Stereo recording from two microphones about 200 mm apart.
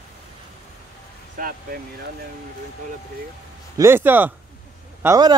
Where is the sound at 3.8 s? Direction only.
10° right (ahead or behind).